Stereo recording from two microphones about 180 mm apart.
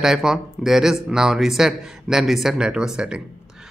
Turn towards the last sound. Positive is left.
turn(degrees=-5)  # may be behind; listen again after turning